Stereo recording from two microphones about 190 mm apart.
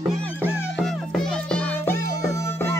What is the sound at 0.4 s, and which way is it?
Music, 5° right (ahead or behind).